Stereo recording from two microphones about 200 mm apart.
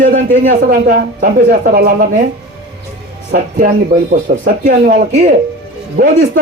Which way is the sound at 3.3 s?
40° right (ahead or behind).